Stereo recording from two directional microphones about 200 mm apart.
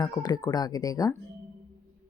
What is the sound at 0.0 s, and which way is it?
Speech, 20° left (ahead or behind).